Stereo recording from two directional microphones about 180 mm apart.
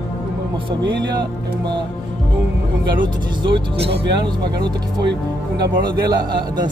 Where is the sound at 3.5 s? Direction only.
35° right (ahead or behind).